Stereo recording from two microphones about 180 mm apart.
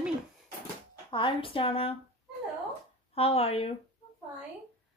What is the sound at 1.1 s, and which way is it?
Speech, 30° left (ahead or behind).